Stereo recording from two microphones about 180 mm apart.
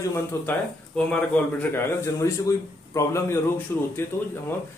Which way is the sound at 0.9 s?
5° left (ahead or behind).